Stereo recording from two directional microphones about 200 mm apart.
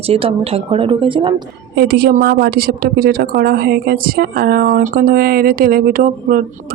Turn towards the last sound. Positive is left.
turn(degrees=-45)  # may be behind; listen again after turning